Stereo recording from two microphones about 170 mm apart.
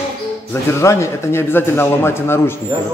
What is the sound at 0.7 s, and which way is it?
Speech, 15° left (ahead or behind).